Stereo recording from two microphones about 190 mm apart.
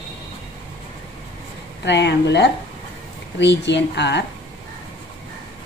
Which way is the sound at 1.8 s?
65° left (ahead or behind).